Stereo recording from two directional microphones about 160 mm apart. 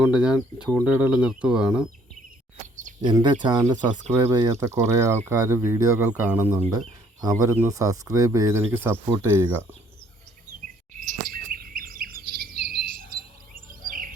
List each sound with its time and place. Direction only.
0.0 s speech: 5° right (ahead or behind)
3.0 s speech: 30° right (ahead or behind)
10.9 s chirp: 50° right (ahead or behind); by 12.6 s 65° right (ahead or behind)
12.7 s cricket: 65° right (ahead or behind)